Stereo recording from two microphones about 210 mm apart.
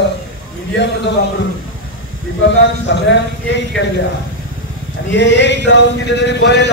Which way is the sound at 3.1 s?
60° left (ahead or behind).